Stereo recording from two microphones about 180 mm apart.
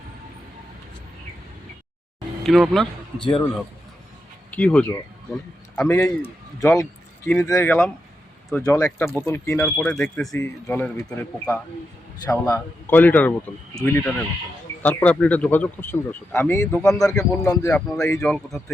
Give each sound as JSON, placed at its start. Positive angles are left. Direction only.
{"t": 2.4, "sound": "a man's voice", "side_deg": 0}
{"t": 4.5, "sound": "a man's voice", "side_deg": 10}
{"t": 6.6, "sound": "speech", "side_deg": 15}
{"t": 9.0, "sound": "speech", "side_deg": 5}
{"t": 16.8, "sound": "speech", "side_deg": 0}
{"t": 17.2, "sound": "speech", "side_deg": 15}
{"t": 17.8, "sound": "speech", "side_deg": 5}